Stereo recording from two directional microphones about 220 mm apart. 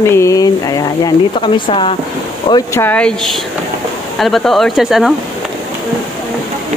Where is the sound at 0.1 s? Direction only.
15° left (ahead or behind).